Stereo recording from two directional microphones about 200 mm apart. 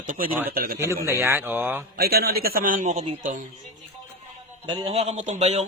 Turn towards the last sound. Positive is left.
turn(degrees=-35)  # may be behind; listen again after turning